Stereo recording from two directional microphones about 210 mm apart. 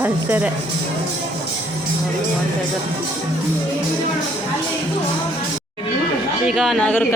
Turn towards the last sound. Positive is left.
turn(degrees=5)  # may be behind; listen again after turning